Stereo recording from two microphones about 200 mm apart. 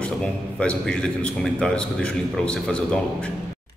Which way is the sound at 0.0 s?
5° left (ahead or behind).